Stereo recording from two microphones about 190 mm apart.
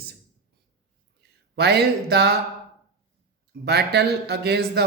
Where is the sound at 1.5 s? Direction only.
60° right (ahead or behind).